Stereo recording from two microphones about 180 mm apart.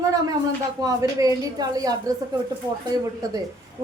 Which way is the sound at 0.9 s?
20° right (ahead or behind).